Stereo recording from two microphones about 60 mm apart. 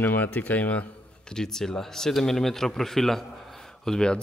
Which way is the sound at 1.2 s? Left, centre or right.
Centre.